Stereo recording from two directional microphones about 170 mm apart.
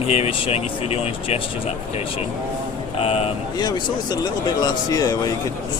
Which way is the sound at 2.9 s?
35° left (ahead or behind).